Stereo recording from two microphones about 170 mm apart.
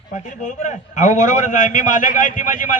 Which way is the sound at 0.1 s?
45° left (ahead or behind).